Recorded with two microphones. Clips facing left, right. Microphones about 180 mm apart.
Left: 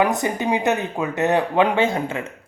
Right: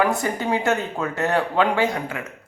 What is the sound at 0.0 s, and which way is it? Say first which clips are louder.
Speech: left 2 dB; 20° left (ahead or behind).